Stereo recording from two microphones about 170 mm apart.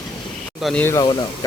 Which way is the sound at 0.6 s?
Centre (ahead or behind).